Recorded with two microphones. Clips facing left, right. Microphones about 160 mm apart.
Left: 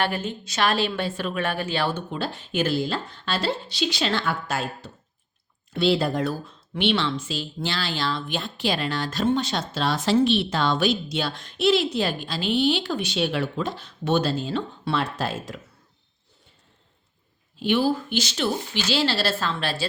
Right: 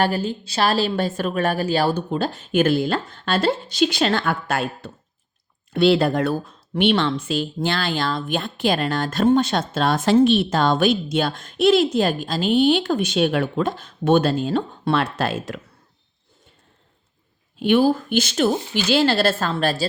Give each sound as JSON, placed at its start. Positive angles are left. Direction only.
{"t": 0.0, "sound": "speech", "side_deg": -35}
{"t": 6.4, "sound": "speech", "side_deg": -50}
{"t": 17.6, "sound": "speech", "side_deg": -50}